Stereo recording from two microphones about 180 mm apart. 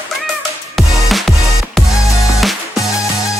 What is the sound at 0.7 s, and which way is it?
Music, centre (ahead or behind).